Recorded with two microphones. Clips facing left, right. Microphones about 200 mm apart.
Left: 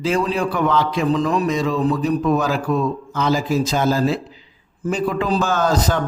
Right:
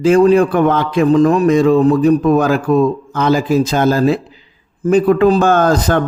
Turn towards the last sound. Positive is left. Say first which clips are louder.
# right 6 dB
turn(degrees=-55)  # may be behind; listen again after turning